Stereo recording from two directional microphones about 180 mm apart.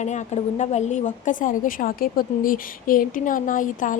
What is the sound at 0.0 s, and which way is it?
A woman's voice, 40° left (ahead or behind).